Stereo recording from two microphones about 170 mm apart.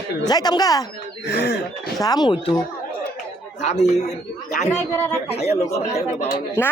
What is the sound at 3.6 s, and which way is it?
Speech, 45° left (ahead or behind).